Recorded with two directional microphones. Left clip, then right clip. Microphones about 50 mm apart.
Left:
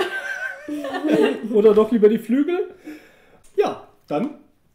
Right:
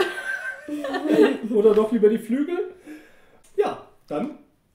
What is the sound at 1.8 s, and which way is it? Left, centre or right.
Speech, left.